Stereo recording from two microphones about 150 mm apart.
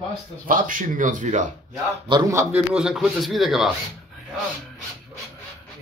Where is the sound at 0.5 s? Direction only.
65° right (ahead or behind).